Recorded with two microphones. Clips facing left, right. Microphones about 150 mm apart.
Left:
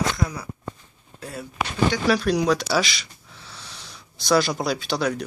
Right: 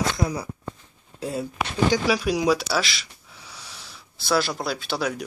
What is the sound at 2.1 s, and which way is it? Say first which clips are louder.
Speech: left 1 dB; 10° right (ahead or behind).